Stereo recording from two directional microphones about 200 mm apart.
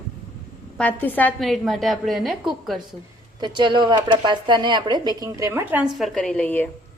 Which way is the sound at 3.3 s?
20° right (ahead or behind).